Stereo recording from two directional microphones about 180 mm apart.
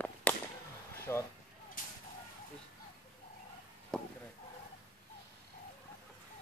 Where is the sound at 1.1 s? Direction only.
15° left (ahead or behind).